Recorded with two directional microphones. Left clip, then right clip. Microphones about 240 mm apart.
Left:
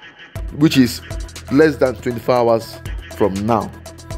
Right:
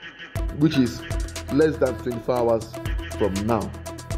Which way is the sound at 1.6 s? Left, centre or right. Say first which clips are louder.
Left 7 dB; left.